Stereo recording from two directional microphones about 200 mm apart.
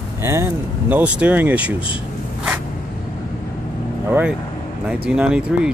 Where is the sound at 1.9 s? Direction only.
5° right (ahead or behind).